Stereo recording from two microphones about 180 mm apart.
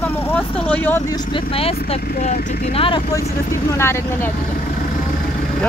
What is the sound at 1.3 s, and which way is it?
Speech, 30° left (ahead or behind).